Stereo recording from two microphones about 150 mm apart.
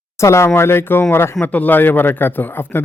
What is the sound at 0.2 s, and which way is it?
A man's voice, 20° left (ahead or behind).